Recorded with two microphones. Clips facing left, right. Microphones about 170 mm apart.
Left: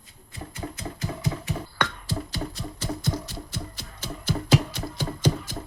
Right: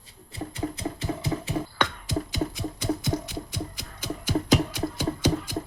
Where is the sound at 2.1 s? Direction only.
15° right (ahead or behind).